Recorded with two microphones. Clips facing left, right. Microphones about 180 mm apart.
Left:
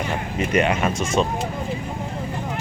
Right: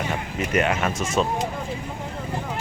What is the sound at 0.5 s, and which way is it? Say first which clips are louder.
Speech: left 2 dB; centre (ahead or behind).